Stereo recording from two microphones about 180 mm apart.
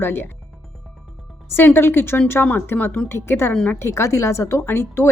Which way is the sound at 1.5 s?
10° left (ahead or behind).